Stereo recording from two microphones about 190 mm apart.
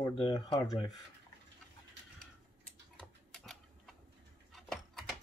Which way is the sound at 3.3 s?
Centre (ahead or behind).